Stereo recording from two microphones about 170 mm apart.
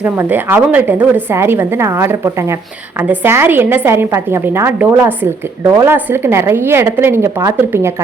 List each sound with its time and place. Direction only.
0.0 s a woman's voice: 10° right (ahead or behind)